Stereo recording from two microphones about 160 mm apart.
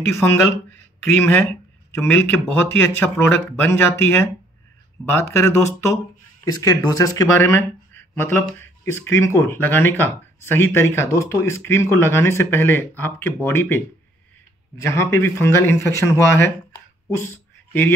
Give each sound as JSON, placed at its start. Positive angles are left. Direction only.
{"t": 0.1, "sound": "speech", "side_deg": 15}
{"t": 14.8, "sound": "speech", "side_deg": 15}
{"t": 17.2, "sound": "a sound", "side_deg": 15}